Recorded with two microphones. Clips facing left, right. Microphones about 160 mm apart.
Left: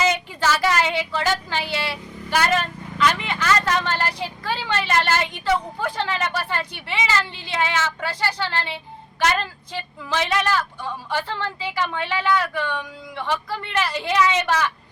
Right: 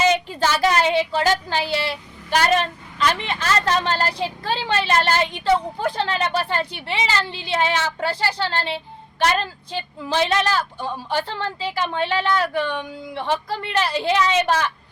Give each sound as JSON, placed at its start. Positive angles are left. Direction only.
{"t": 0.1, "sound": "child singing", "side_deg": -30}
{"t": 2.4, "sound": "a woman's voice", "side_deg": -35}